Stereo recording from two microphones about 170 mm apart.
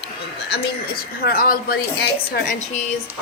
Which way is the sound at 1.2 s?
60° left (ahead or behind).